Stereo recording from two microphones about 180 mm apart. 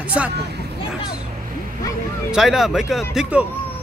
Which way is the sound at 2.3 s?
5° right (ahead or behind).